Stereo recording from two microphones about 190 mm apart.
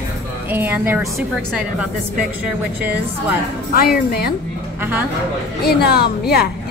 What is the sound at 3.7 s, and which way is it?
Speech, 55° left (ahead or behind).